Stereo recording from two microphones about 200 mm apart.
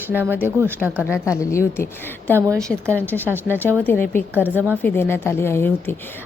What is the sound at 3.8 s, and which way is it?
Speech, 10° left (ahead or behind).